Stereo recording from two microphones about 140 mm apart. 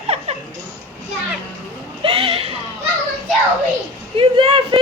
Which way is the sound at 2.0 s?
40° right (ahead or behind).